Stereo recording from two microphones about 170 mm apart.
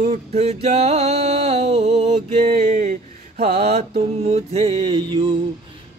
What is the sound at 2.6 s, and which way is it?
Mantra, 45° right (ahead or behind).